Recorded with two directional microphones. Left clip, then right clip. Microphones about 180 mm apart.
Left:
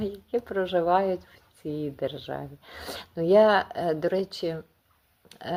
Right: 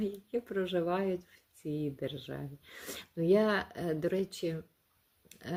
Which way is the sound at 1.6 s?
10° left (ahead or behind).